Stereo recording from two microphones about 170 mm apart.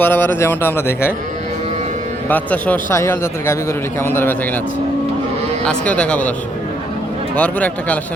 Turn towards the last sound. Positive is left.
turn(degrees=10)  # may be behind; listen again after turning